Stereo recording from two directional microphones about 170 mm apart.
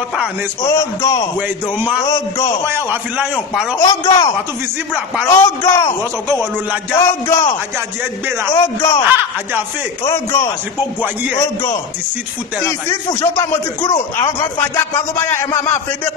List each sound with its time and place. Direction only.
0.6 s a man's voice: 20° left (ahead or behind)
2.6 s a man's voice: 10° right (ahead or behind)
3.8 s a man's voice: 25° left (ahead or behind)
7.0 s speech: 15° left (ahead or behind)
8.5 s a man's voice: 20° left (ahead or behind)
10.0 s speech: 15° left (ahead or behind)
14.6 s speech: 15° left (ahead or behind)